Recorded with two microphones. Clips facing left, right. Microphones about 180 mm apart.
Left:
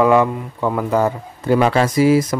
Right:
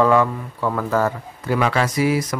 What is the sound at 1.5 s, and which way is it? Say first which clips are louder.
Speech: left 5 dB; 30° left (ahead or behind).